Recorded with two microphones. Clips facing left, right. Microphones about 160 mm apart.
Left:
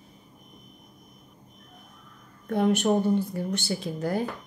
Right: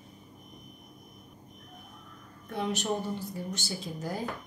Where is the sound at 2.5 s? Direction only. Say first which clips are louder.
Left 9 dB; 55° left (ahead or behind).